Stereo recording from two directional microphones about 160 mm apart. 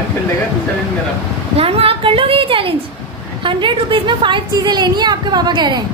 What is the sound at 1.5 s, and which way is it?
A woman's voice, 35° right (ahead or behind).